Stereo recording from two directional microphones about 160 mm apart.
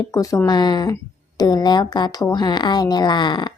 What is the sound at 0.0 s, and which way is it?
Speech, 20° left (ahead or behind).